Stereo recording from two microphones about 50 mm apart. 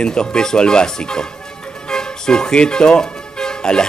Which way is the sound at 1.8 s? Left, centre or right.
Centre.